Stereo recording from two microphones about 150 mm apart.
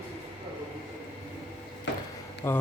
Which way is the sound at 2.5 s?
15° left (ahead or behind).